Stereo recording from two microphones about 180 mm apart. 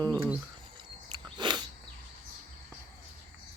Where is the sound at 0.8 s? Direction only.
25° right (ahead or behind).